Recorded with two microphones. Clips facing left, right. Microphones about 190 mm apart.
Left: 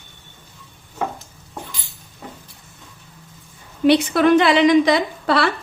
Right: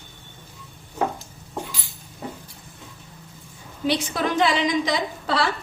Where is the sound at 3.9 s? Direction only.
65° left (ahead or behind).